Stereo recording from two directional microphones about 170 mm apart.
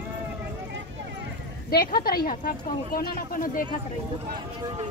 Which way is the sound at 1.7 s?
60° left (ahead or behind).